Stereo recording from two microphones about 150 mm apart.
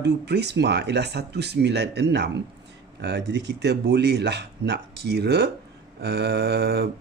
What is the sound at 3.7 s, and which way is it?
Speech, 90° right.